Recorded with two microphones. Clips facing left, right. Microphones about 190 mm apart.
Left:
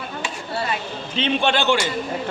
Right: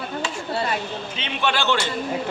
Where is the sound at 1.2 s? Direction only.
25° left (ahead or behind).